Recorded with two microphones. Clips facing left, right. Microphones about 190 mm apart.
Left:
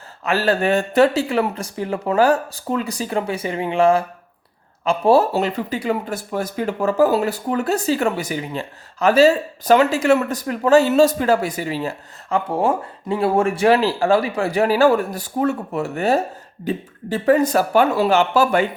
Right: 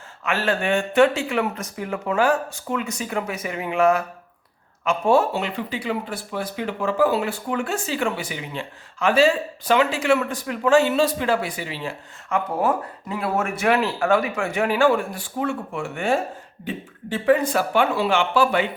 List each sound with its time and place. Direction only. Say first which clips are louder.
0.3 s speech: left 4 dB; 35° left (ahead or behind)
12.5 s speech: left 3 dB; 30° left (ahead or behind)